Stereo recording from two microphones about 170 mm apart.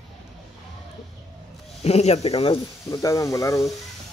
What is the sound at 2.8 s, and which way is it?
Speech, 20° left (ahead or behind).